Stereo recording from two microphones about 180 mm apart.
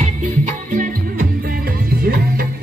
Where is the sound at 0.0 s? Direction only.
40° right (ahead or behind).